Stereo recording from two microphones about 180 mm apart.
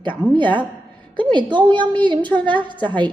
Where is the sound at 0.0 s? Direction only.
25° right (ahead or behind).